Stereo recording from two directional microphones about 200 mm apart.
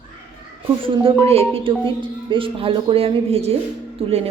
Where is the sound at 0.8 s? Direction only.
25° right (ahead or behind).